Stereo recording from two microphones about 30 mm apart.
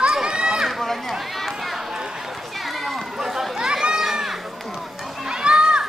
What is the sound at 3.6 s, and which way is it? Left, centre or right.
Run, right.